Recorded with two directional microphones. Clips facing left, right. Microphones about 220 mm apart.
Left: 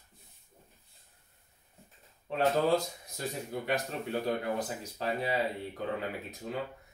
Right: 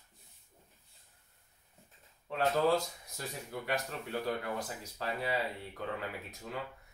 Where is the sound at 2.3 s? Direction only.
20° left (ahead or behind).